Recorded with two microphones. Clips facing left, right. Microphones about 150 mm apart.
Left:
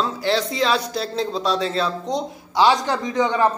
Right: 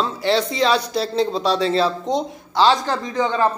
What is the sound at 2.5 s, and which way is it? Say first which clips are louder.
Speech: even; 15° left (ahead or behind).